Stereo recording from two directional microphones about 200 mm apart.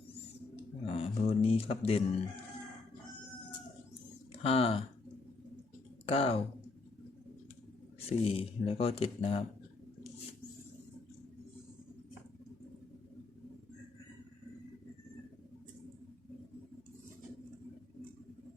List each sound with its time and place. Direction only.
0.9 s speech: 30° left (ahead or behind)
4.4 s speech: 30° left (ahead or behind)
6.1 s speech: 30° left (ahead or behind)
7.9 s speech: 30° left (ahead or behind)